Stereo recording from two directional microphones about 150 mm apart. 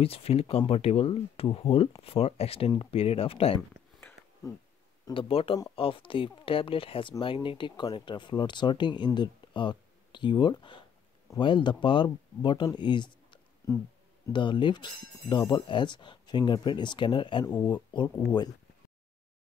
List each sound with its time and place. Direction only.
0.0 s speech: 40° left (ahead or behind)
5.1 s speech: 35° left (ahead or behind)
13.6 s speech: 20° left (ahead or behind)
14.3 s speech: 30° left (ahead or behind)